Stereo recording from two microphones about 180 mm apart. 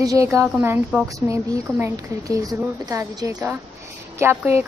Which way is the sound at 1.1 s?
20° right (ahead or behind).